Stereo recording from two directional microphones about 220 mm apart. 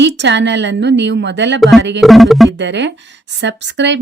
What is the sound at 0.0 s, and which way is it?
A woman's voice, 55° right (ahead or behind).